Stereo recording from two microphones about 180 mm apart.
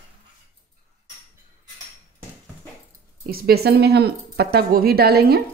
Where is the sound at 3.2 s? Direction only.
55° right (ahead or behind).